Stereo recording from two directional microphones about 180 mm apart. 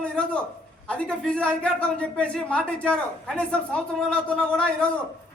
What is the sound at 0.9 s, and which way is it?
A man's voice, 5° left (ahead or behind).